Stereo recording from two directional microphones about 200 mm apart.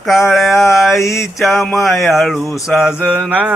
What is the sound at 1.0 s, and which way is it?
Mantra, 15° left (ahead or behind).